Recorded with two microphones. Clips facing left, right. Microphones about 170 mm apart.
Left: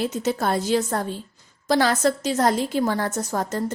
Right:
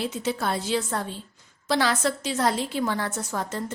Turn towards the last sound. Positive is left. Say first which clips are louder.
# left 5 dB
turn(degrees=40)  # may be behind; listen again after turning